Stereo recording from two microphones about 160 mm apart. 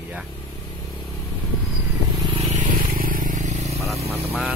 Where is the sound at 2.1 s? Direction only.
25° right (ahead or behind).